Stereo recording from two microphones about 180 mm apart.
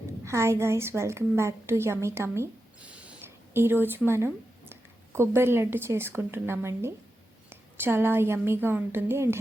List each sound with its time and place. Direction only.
0.3 s a woman's voice: 15° right (ahead or behind)